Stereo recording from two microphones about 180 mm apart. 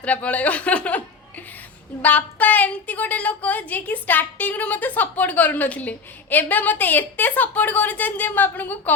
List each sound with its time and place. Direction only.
0.0 s a woman's voice: 5° left (ahead or behind)